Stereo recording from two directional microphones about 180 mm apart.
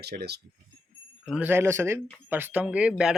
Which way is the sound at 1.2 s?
5° right (ahead or behind).